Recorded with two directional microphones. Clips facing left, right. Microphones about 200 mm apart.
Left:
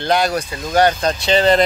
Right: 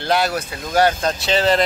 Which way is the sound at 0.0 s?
5° right (ahead or behind).